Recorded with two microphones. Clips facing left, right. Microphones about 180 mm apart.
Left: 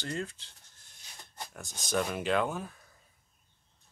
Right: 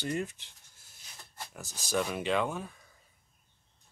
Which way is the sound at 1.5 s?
Centre (ahead or behind).